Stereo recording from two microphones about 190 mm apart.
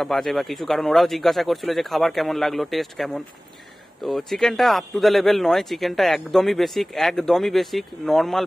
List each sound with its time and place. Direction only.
0.0 s speech: centre (ahead or behind)